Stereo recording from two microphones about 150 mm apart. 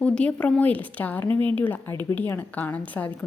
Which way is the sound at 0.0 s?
10° left (ahead or behind).